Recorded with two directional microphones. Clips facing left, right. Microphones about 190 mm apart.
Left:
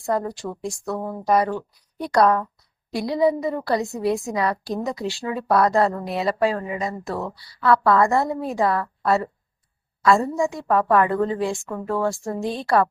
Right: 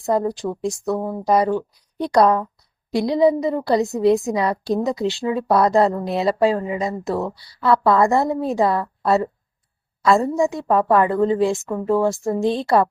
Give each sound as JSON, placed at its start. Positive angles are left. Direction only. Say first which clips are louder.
{"t": 0.0, "sound": "a woman's voice", "louder": "right 4 dB", "side_deg": -15}
{"t": 2.0, "sound": "a woman's voice", "louder": "right 2 dB", "side_deg": -20}